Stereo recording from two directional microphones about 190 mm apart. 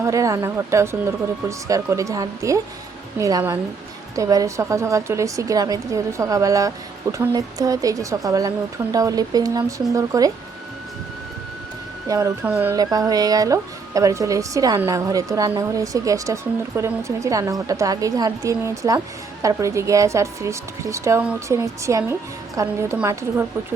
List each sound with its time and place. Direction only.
0.0 s speech: 15° right (ahead or behind)
12.0 s speech: 15° right (ahead or behind)